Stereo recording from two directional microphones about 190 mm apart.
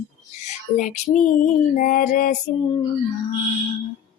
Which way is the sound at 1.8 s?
45° left (ahead or behind).